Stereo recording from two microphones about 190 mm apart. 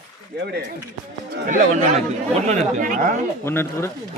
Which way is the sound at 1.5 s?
40° right (ahead or behind).